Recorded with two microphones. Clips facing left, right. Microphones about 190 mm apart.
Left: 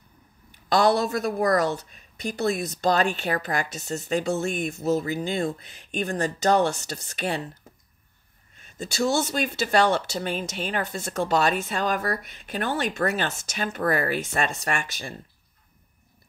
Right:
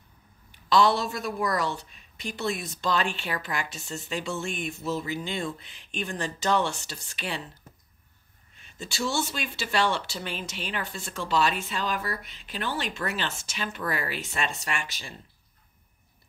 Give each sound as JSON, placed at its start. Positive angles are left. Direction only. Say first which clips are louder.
{"t": 0.5, "sound": "a woman's voice", "louder": "left 2 dB", "side_deg": 45}
{"t": 8.5, "sound": "a woman's voice", "louder": "left 6 dB", "side_deg": 45}